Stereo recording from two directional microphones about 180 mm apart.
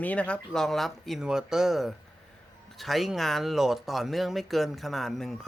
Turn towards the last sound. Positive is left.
turn(degrees=0)  # may be behind; listen again after turning